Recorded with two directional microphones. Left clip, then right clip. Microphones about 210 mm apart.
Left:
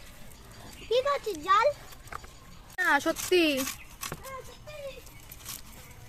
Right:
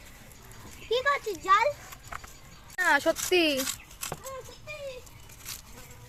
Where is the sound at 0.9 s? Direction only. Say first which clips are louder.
Even; 35° left (ahead or behind).